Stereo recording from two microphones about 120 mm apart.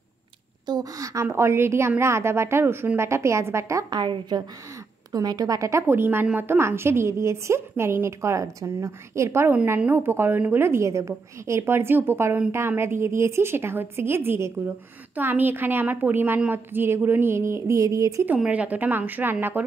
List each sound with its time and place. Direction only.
0.7 s a woman's voice: 30° right (ahead or behind)
18.2 s a woman's voice: 10° right (ahead or behind)